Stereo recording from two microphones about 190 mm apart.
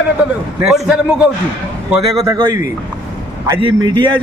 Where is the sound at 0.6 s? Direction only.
Centre (ahead or behind).